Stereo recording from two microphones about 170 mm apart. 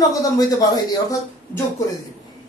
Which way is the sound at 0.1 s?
20° left (ahead or behind).